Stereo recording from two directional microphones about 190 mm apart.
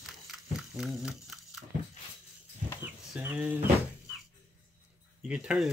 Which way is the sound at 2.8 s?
10° right (ahead or behind).